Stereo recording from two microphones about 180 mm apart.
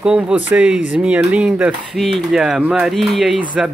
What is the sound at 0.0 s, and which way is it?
Speech, 5° right (ahead or behind).